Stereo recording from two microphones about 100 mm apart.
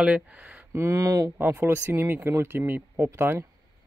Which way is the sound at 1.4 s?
20° right (ahead or behind).